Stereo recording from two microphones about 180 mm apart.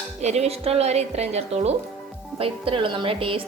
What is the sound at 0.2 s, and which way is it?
Speech, 35° right (ahead or behind).